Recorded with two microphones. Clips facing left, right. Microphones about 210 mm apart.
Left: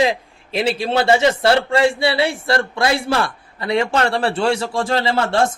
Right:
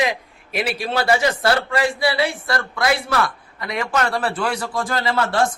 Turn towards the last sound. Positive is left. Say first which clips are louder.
# left 2 dB
turn(degrees=25)  # may be behind; listen again after turning